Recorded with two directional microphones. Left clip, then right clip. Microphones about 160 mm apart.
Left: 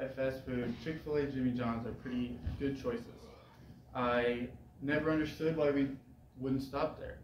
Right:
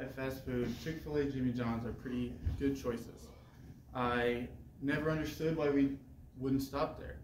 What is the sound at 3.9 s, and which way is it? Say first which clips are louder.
Speech: left 1 dB; 35° right (ahead or behind).